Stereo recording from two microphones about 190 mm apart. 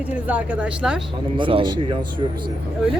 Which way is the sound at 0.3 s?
5° right (ahead or behind).